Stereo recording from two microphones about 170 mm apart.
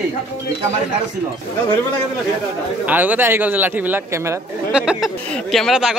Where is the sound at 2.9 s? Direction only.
10° right (ahead or behind).